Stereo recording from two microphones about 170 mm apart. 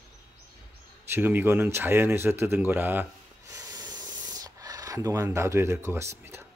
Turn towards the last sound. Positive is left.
turn(degrees=-15)  # may be behind; listen again after turning